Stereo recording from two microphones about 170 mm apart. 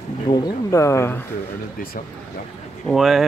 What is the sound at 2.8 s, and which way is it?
Speech, centre (ahead or behind).